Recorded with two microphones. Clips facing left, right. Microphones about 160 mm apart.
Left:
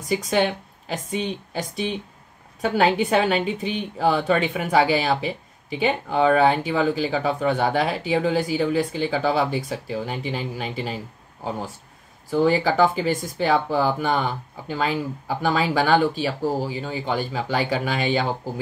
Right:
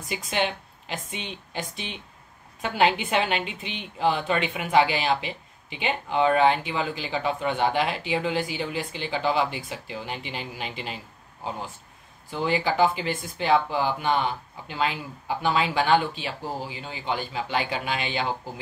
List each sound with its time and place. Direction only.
0.1 s a woman's voice: 40° left (ahead or behind)
12.3 s a woman's voice: 40° left (ahead or behind)